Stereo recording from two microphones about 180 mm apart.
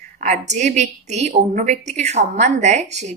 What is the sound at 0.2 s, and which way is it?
A woman's voice, 40° right (ahead or behind).